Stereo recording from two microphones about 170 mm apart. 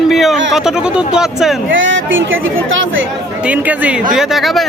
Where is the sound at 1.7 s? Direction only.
90° right.